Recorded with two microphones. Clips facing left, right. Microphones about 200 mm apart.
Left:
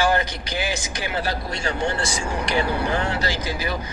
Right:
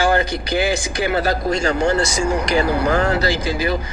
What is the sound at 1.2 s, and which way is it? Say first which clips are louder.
Speech: right 8 dB; 45° right (ahead or behind).